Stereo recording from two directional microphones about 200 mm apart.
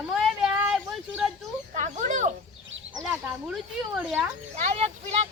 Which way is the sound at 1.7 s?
40° right (ahead or behind).